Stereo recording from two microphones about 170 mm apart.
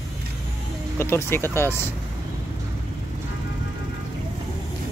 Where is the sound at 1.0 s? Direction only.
15° left (ahead or behind).